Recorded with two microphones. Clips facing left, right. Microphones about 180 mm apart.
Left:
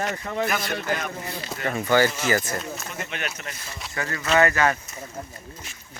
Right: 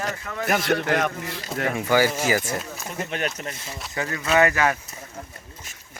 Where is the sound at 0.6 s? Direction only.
80° right.